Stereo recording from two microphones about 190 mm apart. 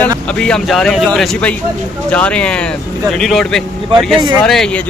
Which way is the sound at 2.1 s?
5° left (ahead or behind).